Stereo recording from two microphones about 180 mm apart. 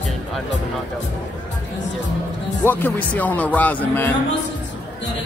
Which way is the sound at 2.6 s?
10° left (ahead or behind).